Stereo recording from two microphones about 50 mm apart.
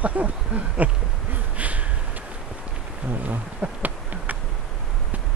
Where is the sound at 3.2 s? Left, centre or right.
Right.